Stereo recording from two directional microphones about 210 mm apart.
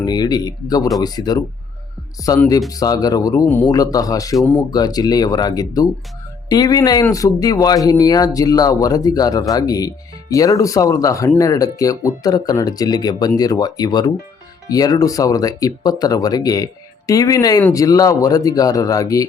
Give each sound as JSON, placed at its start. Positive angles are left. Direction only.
{"t": 0.0, "sound": "speech", "side_deg": 20}
{"t": 4.7, "sound": "speech", "side_deg": 20}